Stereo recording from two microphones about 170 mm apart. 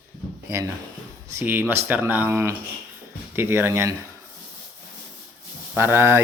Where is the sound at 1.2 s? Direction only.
15° right (ahead or behind).